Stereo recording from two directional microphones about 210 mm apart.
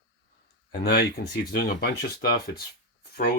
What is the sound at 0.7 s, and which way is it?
Speech, 50° left (ahead or behind).